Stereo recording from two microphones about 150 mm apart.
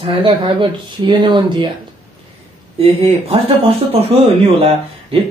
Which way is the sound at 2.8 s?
40° right (ahead or behind).